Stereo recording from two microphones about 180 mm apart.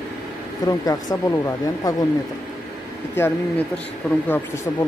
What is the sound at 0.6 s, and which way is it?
Speech, 20° left (ahead or behind).